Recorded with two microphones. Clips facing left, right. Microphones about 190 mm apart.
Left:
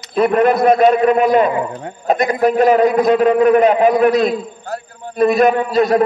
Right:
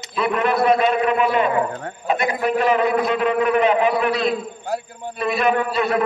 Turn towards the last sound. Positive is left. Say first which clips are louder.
# left 6 dB
turn(degrees=40)  # may be behind; listen again after turning